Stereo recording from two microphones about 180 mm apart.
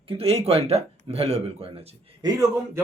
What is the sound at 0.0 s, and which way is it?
Speech, 30° right (ahead or behind).